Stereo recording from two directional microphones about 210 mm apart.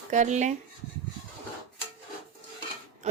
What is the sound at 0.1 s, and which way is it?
Speech, 35° right (ahead or behind).